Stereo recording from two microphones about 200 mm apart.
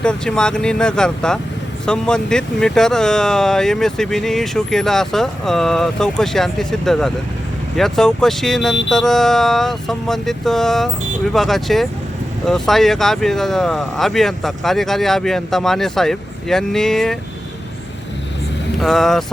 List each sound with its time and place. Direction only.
0.0 s speech: 5° left (ahead or behind)
18.8 s speech: centre (ahead or behind)